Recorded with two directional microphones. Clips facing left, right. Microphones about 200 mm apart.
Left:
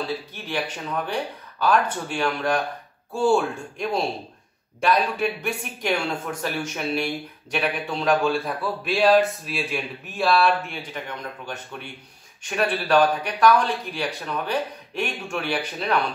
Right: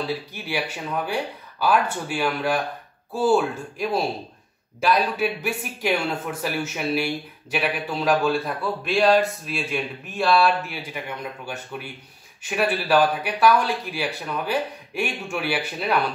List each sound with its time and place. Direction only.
0.3 s a man's voice: 10° right (ahead or behind)